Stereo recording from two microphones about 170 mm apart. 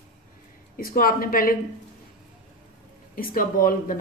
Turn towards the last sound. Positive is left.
turn(degrees=55)  # may be behind; listen again after turning